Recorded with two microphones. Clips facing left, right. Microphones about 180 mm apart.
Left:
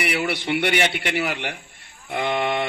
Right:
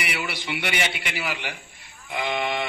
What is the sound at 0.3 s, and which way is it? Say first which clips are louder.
A man's voice: left 7 dB; 60° left (ahead or behind).